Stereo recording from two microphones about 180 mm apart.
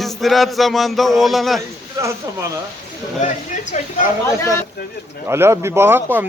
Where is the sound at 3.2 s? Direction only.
45° left (ahead or behind).